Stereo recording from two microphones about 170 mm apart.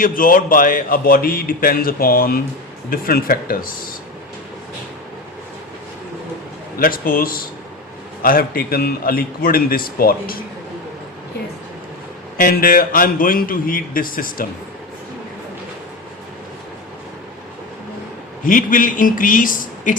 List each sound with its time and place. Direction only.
0.0 s a man's voice: 55° left (ahead or behind)
6.7 s a man's voice: 55° left (ahead or behind)
12.4 s a man's voice: 60° left (ahead or behind)
18.4 s speech: 50° left (ahead or behind)